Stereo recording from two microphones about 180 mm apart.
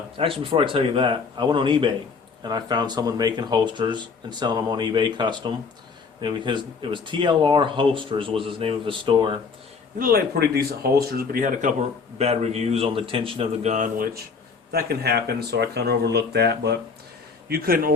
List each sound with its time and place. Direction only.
0.2 s speech: 30° right (ahead or behind)
10.0 s speech: 55° right (ahead or behind)
12.2 s a man's voice: 35° right (ahead or behind)
14.7 s speech: 65° right (ahead or behind)
17.5 s speech: 55° right (ahead or behind)